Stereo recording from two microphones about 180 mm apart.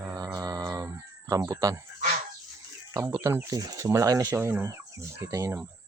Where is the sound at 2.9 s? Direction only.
15° right (ahead or behind).